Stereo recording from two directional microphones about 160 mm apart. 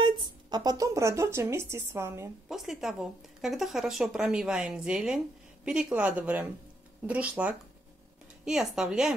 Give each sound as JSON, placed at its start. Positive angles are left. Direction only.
{"t": 0.0, "sound": "speech", "side_deg": -25}
{"t": 2.4, "sound": "a woman's voice", "side_deg": 0}